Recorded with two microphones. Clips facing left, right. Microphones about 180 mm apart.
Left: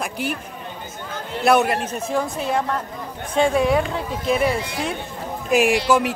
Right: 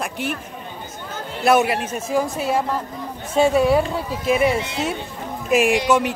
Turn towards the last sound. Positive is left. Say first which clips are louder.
# even
turn(degrees=0)  # may be behind; listen again after turning